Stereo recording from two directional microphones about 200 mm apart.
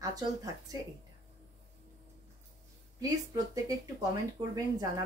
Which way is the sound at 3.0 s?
20° right (ahead or behind).